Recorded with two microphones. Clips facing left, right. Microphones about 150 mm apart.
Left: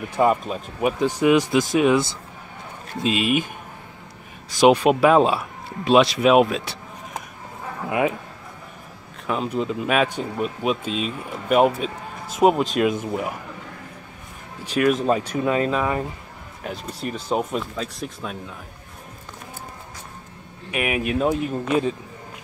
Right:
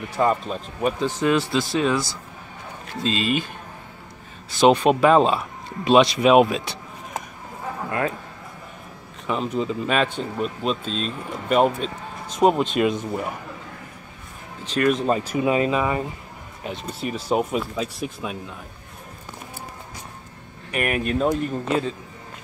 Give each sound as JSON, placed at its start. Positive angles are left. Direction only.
{"t": 0.1, "sound": "speech", "side_deg": 15}
{"t": 4.6, "sound": "speech", "side_deg": 10}
{"t": 9.3, "sound": "speech", "side_deg": 0}
{"t": 14.6, "sound": "speech", "side_deg": 10}
{"t": 20.7, "sound": "speech", "side_deg": 5}